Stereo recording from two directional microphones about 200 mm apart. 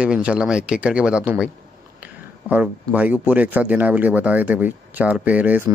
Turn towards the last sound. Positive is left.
turn(degrees=-10)  # may be behind; listen again after turning